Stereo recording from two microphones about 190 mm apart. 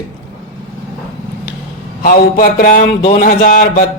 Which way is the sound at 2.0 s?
45° left (ahead or behind).